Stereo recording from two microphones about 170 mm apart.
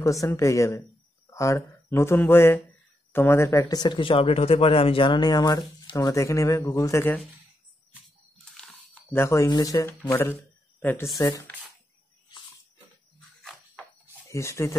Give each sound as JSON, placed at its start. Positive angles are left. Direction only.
{"t": 0.0, "sound": "speech", "side_deg": 20}
{"t": 8.5, "sound": "speech", "side_deg": 10}
{"t": 13.4, "sound": "a sound", "side_deg": 5}
{"t": 14.3, "sound": "speech", "side_deg": 15}